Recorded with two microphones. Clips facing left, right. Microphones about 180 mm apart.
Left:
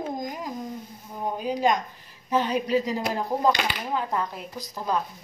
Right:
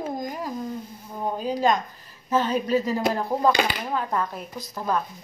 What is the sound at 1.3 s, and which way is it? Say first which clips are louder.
A woman's voice: right 1 dB; 15° left (ahead or behind).